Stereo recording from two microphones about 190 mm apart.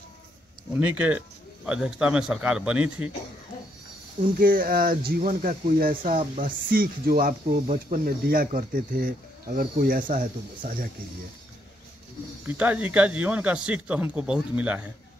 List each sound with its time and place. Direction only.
0.7 s speech: 5° right (ahead or behind)
4.2 s speech: 50° right (ahead or behind)
12.4 s speech: 10° right (ahead or behind)